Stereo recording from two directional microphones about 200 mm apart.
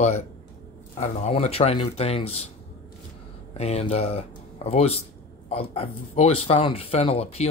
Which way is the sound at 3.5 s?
30° left (ahead or behind).